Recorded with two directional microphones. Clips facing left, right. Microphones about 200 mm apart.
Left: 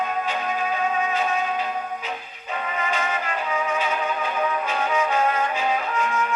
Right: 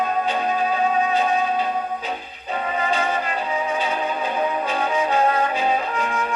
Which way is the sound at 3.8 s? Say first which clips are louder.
Right 2 dB; 35° right (ahead or behind).